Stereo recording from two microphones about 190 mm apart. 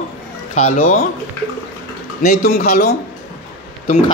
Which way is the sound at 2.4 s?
55° left (ahead or behind).